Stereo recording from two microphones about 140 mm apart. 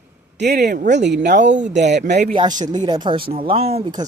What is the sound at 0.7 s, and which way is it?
Speech, 65° right (ahead or behind).